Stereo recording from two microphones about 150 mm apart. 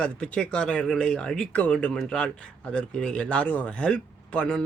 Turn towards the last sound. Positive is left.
turn(degrees=5)  # may be behind; listen again after turning